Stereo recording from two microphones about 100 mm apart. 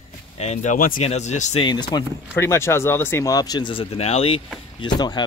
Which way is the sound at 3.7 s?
70° left (ahead or behind).